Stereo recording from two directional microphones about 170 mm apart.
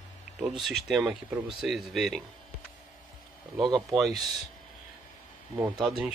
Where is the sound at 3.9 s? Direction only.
Centre (ahead or behind).